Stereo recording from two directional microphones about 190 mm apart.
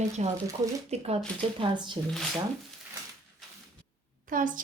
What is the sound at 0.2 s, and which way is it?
Speech, 35° right (ahead or behind).